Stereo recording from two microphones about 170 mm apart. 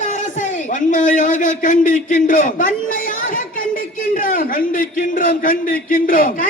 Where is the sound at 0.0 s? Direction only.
50° left (ahead or behind).